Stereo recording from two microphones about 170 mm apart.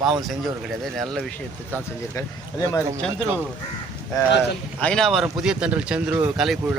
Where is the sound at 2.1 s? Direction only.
20° left (ahead or behind).